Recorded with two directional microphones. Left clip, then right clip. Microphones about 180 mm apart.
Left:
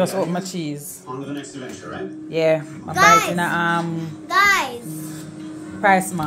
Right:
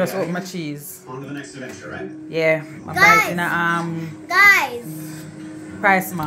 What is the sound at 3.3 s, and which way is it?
A child's voice, 5° left (ahead or behind).